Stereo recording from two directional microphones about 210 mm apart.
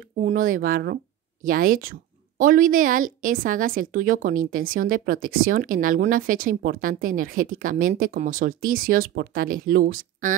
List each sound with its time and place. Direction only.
0.2 s a woman's voice: 40° right (ahead or behind)